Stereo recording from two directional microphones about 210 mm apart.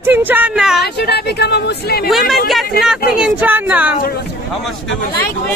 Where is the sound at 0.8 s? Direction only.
50° left (ahead or behind).